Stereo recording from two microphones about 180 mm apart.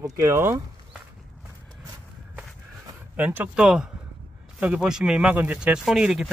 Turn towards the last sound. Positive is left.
turn(degrees=-5)  # may be behind; listen again after turning